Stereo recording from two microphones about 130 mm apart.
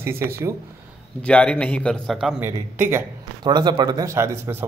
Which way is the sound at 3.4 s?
35° right (ahead or behind).